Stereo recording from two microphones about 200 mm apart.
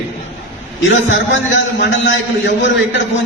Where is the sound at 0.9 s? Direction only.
70° left (ahead or behind).